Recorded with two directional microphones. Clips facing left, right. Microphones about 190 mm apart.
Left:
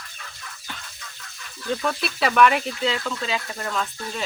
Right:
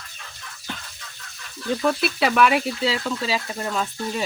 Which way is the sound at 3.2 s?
30° right (ahead or behind).